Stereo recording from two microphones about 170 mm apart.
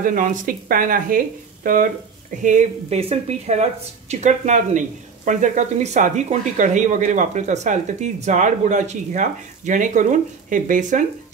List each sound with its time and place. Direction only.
0.0 s speech: 55° right (ahead or behind)
2.4 s speech: 45° right (ahead or behind)